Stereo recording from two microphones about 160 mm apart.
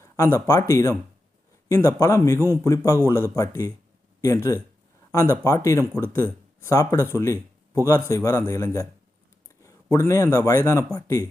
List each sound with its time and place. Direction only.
0.0 s a man's voice: 15° left (ahead or behind)